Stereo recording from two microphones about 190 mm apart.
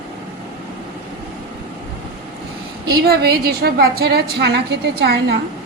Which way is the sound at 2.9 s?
55° right (ahead or behind).